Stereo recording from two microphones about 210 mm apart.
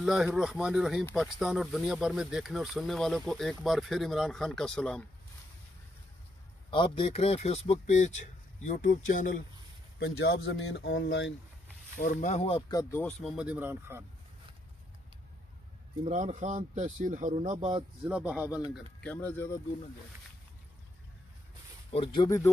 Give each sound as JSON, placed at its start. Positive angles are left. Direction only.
{"t": 0.0, "sound": "speech", "side_deg": -5}
{"t": 6.7, "sound": "speech", "side_deg": 25}
{"t": 9.9, "sound": "speech", "side_deg": 55}
{"t": 12.0, "sound": "speech", "side_deg": 35}
{"t": 13.0, "sound": "speech", "side_deg": 0}
{"t": 16.0, "sound": "speech", "side_deg": -35}
{"t": 18.0, "sound": "speech", "side_deg": -5}
{"t": 19.0, "sound": "speech", "side_deg": 10}
{"t": 21.9, "sound": "speech", "side_deg": 25}